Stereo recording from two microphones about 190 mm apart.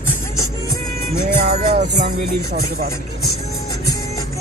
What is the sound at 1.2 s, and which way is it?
Music, 35° right (ahead or behind).